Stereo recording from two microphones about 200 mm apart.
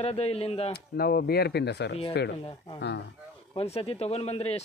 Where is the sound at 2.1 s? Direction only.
55° left (ahead or behind).